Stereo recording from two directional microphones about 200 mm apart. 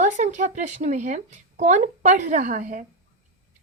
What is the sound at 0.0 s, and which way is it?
A woman's voice, 35° right (ahead or behind).